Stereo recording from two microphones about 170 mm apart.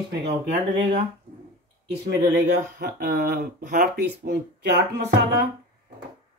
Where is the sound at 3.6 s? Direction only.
50° right (ahead or behind).